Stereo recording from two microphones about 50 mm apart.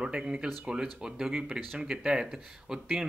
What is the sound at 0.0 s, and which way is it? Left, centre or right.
Speech, centre.